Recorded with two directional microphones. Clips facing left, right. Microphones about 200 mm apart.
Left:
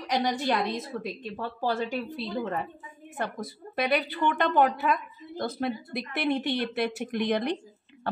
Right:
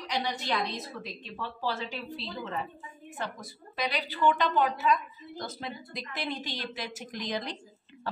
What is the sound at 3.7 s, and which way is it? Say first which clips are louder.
A woman's voice: left 6 dB; 55° left (ahead or behind).